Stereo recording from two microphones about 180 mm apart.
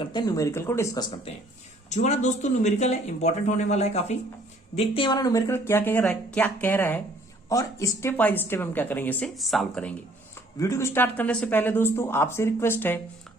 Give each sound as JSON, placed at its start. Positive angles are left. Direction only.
{"t": 0.0, "sound": "a woman's voice", "side_deg": 25}
{"t": 1.9, "sound": "a woman's voice", "side_deg": 40}
{"t": 10.6, "sound": "a woman's voice", "side_deg": 15}